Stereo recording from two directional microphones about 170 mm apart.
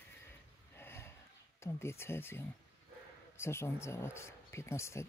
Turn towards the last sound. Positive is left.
turn(degrees=15)  # may be behind; listen again after turning